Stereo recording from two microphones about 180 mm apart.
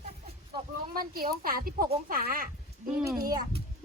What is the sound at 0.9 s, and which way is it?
Speech, 55° right (ahead or behind).